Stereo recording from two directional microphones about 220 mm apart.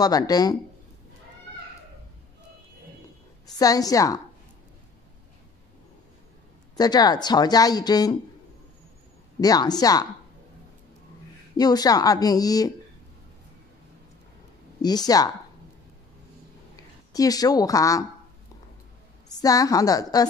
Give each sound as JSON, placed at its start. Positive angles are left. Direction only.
{"t": 0.0, "sound": "speech", "side_deg": 15}
{"t": 3.5, "sound": "speech", "side_deg": 15}
{"t": 6.8, "sound": "speech", "side_deg": 20}
{"t": 9.4, "sound": "speech", "side_deg": 15}
{"t": 11.5, "sound": "speech", "side_deg": 15}
{"t": 14.8, "sound": "speech", "side_deg": 15}
{"t": 16.7, "sound": "speech", "side_deg": 15}
{"t": 19.2, "sound": "a woman's voice", "side_deg": 15}